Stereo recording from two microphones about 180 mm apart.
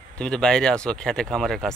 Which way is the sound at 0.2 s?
5° left (ahead or behind).